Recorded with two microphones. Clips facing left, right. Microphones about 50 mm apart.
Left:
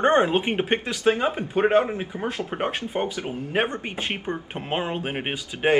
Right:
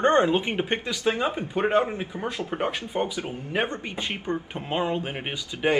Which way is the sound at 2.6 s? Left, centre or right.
Left.